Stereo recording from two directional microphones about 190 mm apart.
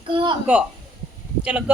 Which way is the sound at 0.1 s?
25° right (ahead or behind).